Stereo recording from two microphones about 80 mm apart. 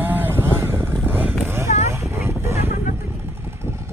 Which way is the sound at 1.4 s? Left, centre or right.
Right.